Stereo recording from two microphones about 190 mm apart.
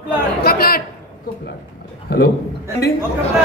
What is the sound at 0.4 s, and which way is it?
Chatter, 55° left (ahead or behind).